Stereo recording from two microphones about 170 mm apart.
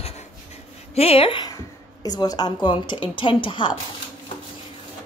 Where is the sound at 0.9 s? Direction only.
35° left (ahead or behind).